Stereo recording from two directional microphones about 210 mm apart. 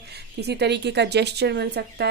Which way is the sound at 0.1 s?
50° right (ahead or behind).